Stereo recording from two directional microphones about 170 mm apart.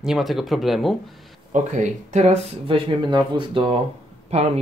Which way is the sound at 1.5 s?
45° right (ahead or behind).